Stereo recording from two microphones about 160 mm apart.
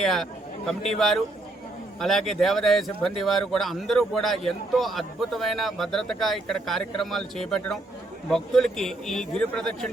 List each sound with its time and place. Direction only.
0.0 s speech: centre (ahead or behind)